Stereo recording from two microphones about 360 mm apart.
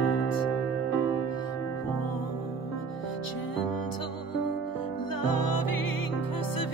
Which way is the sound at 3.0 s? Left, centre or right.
Left.